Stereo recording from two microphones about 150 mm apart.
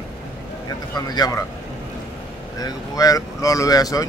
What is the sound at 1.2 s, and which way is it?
Speech, 25° left (ahead or behind).